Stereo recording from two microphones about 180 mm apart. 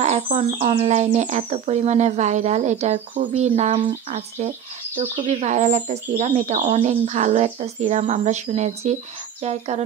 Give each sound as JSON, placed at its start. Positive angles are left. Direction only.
{"t": 0.0, "sound": "speech", "side_deg": -40}